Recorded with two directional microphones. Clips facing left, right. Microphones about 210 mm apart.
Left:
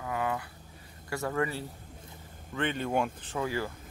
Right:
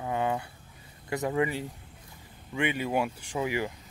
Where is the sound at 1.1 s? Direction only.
15° right (ahead or behind).